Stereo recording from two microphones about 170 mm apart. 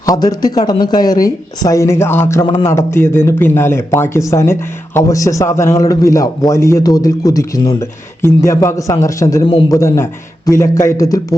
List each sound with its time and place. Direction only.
0.0 s a man's voice: 20° left (ahead or behind)